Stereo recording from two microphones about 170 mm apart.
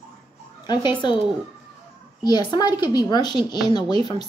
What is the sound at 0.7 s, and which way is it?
Speech, 25° left (ahead or behind).